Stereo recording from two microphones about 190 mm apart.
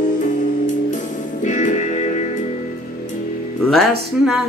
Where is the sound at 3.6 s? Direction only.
Centre (ahead or behind).